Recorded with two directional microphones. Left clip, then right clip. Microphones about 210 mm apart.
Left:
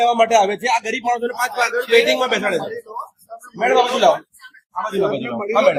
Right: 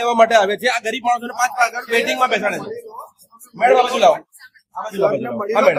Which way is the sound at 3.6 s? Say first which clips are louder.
Right 2 dB; 5° right (ahead or behind).